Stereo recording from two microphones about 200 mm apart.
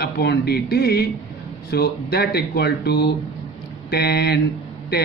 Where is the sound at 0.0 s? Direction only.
55° left (ahead or behind).